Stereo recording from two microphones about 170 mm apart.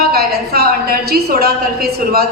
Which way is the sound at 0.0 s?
65° right (ahead or behind).